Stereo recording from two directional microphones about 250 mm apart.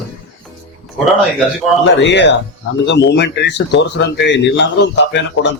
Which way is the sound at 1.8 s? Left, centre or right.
Left.